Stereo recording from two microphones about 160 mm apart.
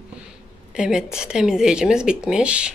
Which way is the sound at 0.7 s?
5° right (ahead or behind).